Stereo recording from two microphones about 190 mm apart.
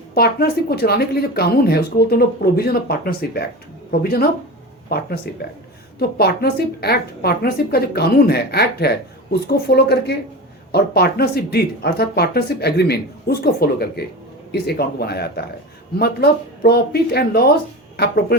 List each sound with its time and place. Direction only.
0.1 s a woman's voice: 55° left (ahead or behind)